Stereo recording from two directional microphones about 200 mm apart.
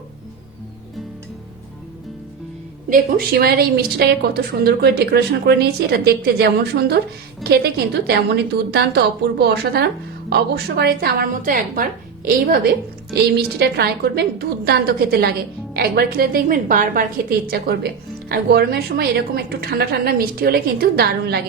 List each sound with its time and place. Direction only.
2.9 s a woman's voice: 50° right (ahead or behind)